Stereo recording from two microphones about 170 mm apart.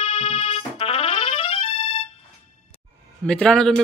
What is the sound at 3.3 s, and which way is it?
Speech, 5° left (ahead or behind).